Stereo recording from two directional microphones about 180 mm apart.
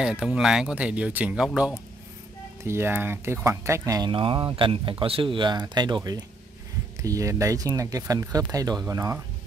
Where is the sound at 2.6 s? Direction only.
15° right (ahead or behind).